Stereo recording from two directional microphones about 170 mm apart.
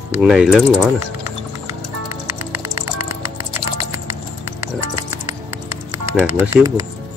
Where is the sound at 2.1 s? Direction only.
15° right (ahead or behind).